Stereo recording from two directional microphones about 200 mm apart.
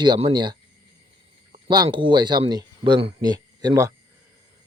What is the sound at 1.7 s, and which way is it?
Speech, 25° right (ahead or behind).